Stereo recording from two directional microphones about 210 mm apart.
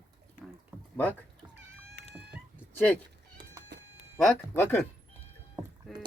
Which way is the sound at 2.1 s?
5° right (ahead or behind).